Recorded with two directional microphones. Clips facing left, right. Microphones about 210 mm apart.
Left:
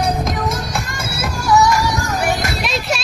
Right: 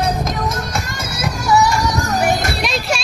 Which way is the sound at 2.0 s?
40° right (ahead or behind).